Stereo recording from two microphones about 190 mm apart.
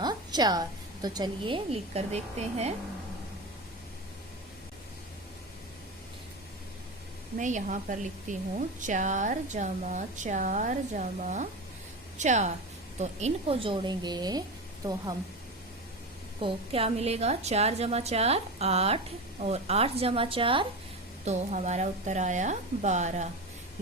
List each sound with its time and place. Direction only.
0.0 s a sound: 20° right (ahead or behind)
1.0 s speech: 20° right (ahead or behind)
7.3 s a woman's voice: 40° right (ahead or behind); by 14.4 s 20° right (ahead or behind)
16.4 s speech: 30° right (ahead or behind)
21.2 s speech: 40° right (ahead or behind)